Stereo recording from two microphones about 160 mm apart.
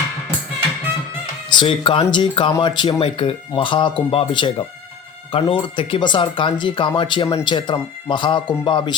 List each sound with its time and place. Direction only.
1.5 s speech: 30° left (ahead or behind)